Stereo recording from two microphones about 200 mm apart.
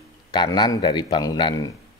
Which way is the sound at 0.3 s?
20° left (ahead or behind).